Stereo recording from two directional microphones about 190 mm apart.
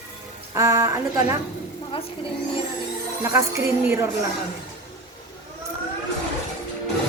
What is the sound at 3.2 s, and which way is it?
Speech, 15° right (ahead or behind).